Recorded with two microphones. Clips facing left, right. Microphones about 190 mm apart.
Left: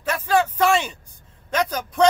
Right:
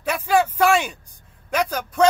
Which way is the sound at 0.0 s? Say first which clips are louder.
Right 1 dB; 15° right (ahead or behind).